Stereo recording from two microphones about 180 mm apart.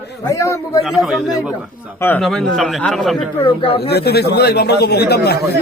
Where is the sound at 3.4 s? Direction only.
30° left (ahead or behind).